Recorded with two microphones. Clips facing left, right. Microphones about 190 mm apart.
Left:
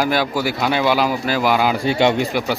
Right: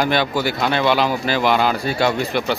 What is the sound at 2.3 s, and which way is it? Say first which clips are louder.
Speech: even; 10° left (ahead or behind).